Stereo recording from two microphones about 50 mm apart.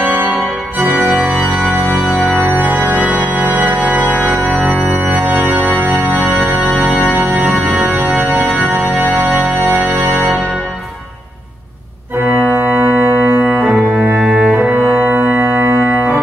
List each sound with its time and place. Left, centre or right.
0.0 s organ: right
7.5 s organ: centre
7.8 s organ: right
12.3 s organ: right
12.8 s music: right
14.3 s cello: right
15.0 s organ: right